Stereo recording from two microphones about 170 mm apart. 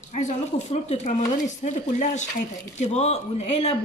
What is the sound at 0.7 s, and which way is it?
Speech, 40° left (ahead or behind).